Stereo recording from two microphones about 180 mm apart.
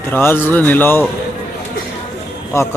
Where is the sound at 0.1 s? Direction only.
10° left (ahead or behind).